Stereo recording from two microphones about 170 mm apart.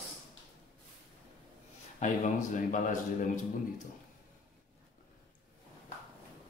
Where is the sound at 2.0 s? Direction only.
45° left (ahead or behind).